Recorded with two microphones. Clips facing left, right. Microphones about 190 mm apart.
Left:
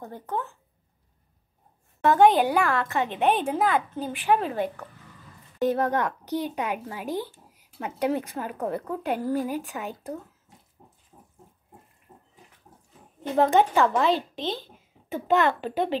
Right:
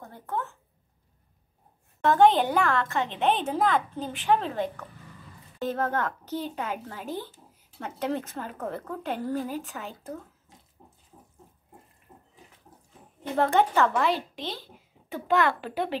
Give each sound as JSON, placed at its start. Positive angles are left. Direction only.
{"t": 0.0, "sound": "speech", "side_deg": 20}
{"t": 2.2, "sound": "a woman's voice", "side_deg": 15}
{"t": 13.4, "sound": "speech", "side_deg": 15}